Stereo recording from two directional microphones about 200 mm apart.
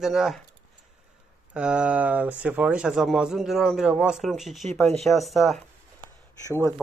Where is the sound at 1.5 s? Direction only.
5° right (ahead or behind).